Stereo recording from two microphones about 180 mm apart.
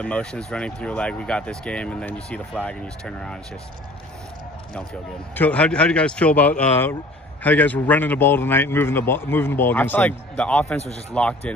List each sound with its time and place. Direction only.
0.0 s speech: 5° left (ahead or behind)
5.3 s a man's voice: 10° left (ahead or behind)
10.8 s speech: 35° left (ahead or behind)
11.1 s a man's voice: 5° left (ahead or behind)